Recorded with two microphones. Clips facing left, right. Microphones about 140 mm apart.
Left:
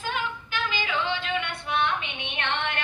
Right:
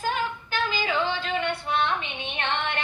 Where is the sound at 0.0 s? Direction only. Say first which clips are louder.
Right 3 dB; 40° right (ahead or behind).